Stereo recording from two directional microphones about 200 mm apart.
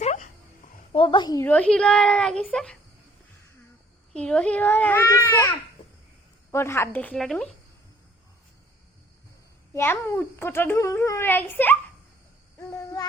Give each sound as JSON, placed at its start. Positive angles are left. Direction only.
{"t": 0.0, "sound": "dog", "side_deg": 35}
{"t": 0.9, "sound": "speech", "side_deg": 25}
{"t": 4.1, "sound": "a child's voice", "side_deg": 5}
{"t": 6.5, "sound": "a child's voice", "side_deg": 15}
{"t": 9.7, "sound": "a child's voice", "side_deg": 10}